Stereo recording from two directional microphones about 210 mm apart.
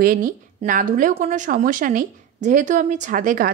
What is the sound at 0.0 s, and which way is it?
A woman's voice, 40° right (ahead or behind).